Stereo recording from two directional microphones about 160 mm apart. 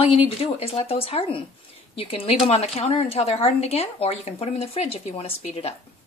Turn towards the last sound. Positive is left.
turn(degrees=40)  # may be behind; listen again after turning